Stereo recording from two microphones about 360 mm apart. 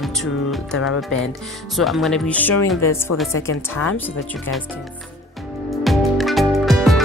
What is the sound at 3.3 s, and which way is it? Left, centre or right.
Speech, left.